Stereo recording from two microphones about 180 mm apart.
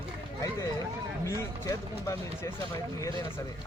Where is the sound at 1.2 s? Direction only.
15° left (ahead or behind).